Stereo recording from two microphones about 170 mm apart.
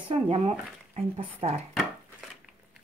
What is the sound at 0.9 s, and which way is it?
Speech, 40° right (ahead or behind).